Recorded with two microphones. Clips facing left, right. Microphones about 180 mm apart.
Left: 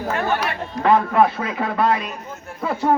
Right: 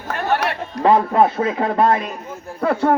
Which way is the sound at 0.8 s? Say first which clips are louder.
Right 2 dB; 30° right (ahead or behind).